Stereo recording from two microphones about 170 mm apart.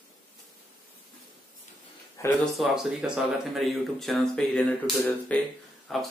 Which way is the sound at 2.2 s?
20° left (ahead or behind).